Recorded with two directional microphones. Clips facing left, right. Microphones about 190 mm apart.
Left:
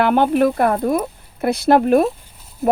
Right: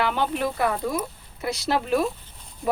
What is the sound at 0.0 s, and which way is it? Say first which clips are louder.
Speech: left 10 dB; 55° left (ahead or behind).